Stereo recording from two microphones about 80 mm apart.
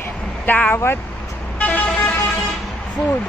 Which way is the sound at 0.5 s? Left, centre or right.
Left.